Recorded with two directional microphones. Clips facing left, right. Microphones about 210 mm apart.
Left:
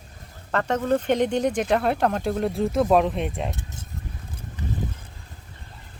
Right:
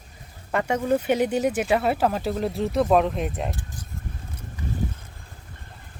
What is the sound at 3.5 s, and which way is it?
Keys jangling, 25° left (ahead or behind).